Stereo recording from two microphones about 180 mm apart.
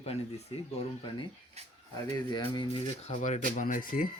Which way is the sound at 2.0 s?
20° left (ahead or behind).